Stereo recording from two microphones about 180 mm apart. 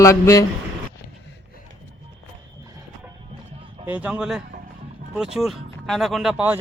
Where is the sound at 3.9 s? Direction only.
10° right (ahead or behind).